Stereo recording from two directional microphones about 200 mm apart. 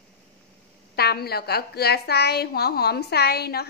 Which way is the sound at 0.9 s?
50° left (ahead or behind).